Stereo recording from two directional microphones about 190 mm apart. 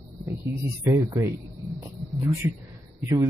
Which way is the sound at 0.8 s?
15° right (ahead or behind).